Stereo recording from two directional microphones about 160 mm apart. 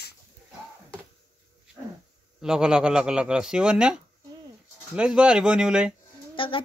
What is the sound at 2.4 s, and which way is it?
Speech, 5° right (ahead or behind).